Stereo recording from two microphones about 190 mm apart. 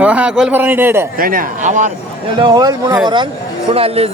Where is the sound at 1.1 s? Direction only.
50° right (ahead or behind).